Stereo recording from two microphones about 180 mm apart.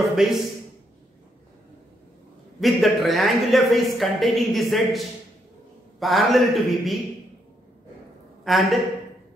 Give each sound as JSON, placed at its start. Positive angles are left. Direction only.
{"t": 0.1, "sound": "a woman's voice", "side_deg": 0}
{"t": 2.6, "sound": "a woman's voice", "side_deg": 0}
{"t": 8.5, "sound": "a woman's voice", "side_deg": 0}